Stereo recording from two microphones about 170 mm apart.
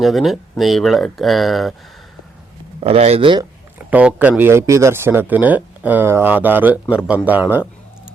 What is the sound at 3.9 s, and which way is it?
Speech, 10° right (ahead or behind).